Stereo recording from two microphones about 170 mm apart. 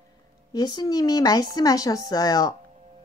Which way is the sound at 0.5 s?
25° left (ahead or behind).